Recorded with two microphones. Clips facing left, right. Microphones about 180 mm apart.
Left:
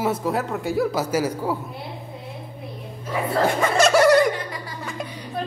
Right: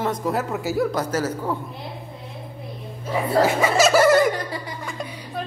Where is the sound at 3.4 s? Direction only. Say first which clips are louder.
Left 1 dB; 5° right (ahead or behind).